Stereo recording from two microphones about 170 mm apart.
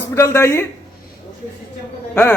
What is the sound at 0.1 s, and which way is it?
Speech, 15° left (ahead or behind).